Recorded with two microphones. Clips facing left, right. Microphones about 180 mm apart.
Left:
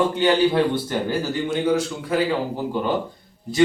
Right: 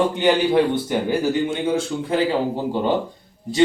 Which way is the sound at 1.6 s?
25° right (ahead or behind).